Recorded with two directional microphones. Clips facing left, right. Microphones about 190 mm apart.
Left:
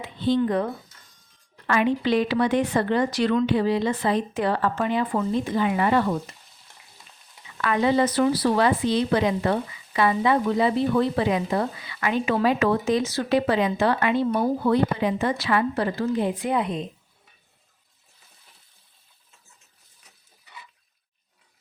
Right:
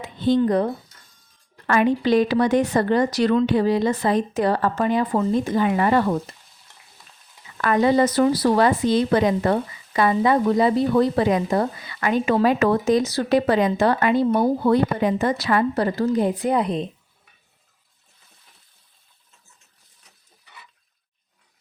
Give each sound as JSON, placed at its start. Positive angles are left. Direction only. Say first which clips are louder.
{"t": 0.0, "sound": "speech", "louder": "right 3 dB", "side_deg": -45}
{"t": 7.6, "sound": "speech", "louder": "right 3 dB", "side_deg": -45}